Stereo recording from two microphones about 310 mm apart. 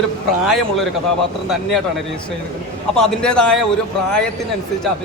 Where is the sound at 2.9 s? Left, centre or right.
Centre.